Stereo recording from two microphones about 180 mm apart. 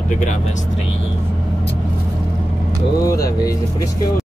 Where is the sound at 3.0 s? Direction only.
20° left (ahead or behind).